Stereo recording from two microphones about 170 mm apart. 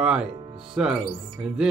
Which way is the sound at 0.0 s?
5° right (ahead or behind).